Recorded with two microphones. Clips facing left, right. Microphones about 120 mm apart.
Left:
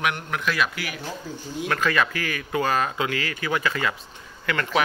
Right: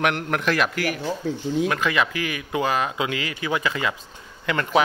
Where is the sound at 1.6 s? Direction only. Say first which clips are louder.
Right 1 dB; 15° right (ahead or behind).